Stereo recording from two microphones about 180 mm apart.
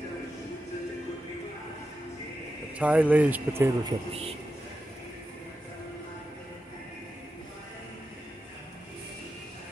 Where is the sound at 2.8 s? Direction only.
10° right (ahead or behind).